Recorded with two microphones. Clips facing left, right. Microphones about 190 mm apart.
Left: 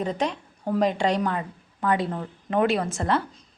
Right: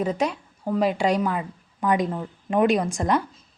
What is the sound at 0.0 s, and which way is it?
A woman's voice, 10° right (ahead or behind).